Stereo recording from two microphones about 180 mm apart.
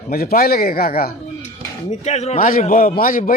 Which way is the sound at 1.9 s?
35° left (ahead or behind).